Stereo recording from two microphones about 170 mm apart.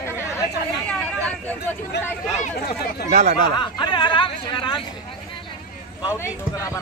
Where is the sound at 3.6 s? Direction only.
30° left (ahead or behind).